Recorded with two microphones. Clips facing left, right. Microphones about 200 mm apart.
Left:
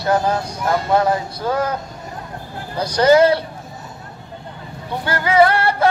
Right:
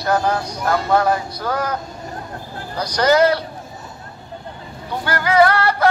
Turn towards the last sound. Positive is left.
turn(degrees=25)  # may be behind; listen again after turning